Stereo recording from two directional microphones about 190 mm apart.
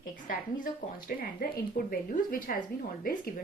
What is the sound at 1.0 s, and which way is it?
A woman's voice, 50° left (ahead or behind).